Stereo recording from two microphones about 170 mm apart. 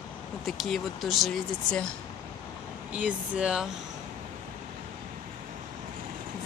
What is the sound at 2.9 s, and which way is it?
Speech, 5° right (ahead or behind).